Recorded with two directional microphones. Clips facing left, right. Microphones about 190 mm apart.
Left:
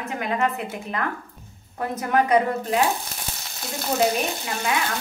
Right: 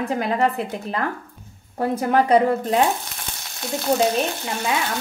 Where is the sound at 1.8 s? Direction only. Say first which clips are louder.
Right 3 dB; 30° right (ahead or behind).